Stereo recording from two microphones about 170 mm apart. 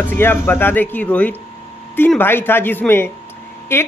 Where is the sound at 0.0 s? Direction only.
10° left (ahead or behind).